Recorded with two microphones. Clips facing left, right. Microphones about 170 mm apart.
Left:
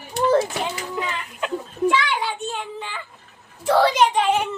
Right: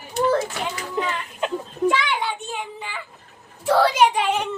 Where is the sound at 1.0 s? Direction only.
25° right (ahead or behind).